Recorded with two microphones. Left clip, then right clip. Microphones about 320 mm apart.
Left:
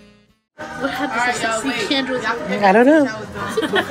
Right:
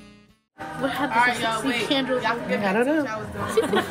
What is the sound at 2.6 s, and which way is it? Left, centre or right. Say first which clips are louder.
Speech: left 13 dB; left.